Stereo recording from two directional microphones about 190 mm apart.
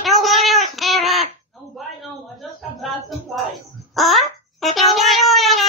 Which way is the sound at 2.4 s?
Centre (ahead or behind).